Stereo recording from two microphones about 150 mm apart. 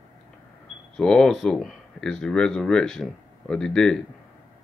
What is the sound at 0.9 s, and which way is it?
Speech, 5° left (ahead or behind).